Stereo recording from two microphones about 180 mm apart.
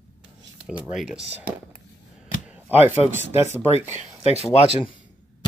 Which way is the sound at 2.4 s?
10° right (ahead or behind).